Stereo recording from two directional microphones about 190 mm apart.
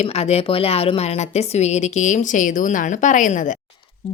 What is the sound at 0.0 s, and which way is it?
A woman's voice, 35° left (ahead or behind).